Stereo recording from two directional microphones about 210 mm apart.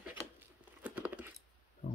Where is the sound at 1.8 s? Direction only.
45° left (ahead or behind).